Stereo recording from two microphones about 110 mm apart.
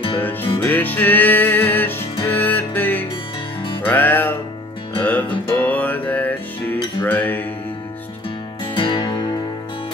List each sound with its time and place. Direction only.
0.2 s music: 15° left (ahead or behind)
8.7 s music: 45° left (ahead or behind)